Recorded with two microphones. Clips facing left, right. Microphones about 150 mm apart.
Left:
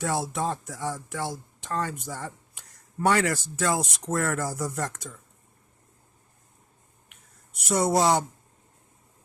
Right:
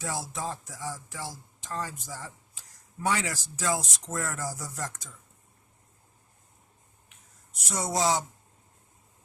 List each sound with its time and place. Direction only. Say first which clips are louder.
0.0 s speech: left 6 dB; 65° left (ahead or behind)
7.6 s speech: left 6 dB; 60° left (ahead or behind)